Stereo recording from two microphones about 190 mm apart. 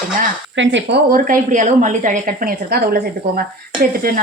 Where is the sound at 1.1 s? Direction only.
45° right (ahead or behind).